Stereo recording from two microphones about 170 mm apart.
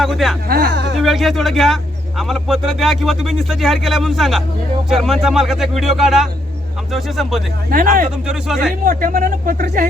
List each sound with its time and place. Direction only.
0.0 s speech: centre (ahead or behind)
0.4 s speech: 60° right (ahead or behind); by 0.9 s 90° right
1.0 s speech: centre (ahead or behind)
7.7 s speech: 55° right (ahead or behind)